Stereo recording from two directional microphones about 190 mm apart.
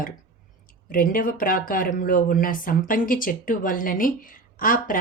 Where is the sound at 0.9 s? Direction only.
50° left (ahead or behind).